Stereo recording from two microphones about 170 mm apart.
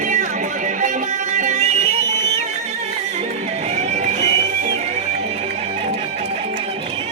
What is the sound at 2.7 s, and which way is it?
Music, 40° right (ahead or behind).